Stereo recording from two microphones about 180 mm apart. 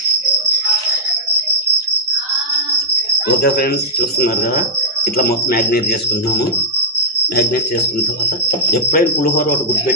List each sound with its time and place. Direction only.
5.1 s speech: 60° left (ahead or behind)
8.7 s speech: 55° left (ahead or behind)